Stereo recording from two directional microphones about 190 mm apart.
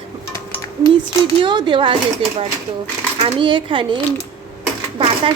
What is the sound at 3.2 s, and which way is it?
Speech, 25° right (ahead or behind).